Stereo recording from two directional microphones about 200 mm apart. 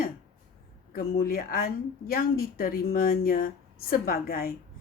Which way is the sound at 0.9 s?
45° left (ahead or behind).